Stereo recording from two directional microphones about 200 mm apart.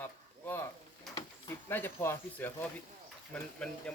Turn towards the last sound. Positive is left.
turn(degrees=5)  # may be behind; listen again after turning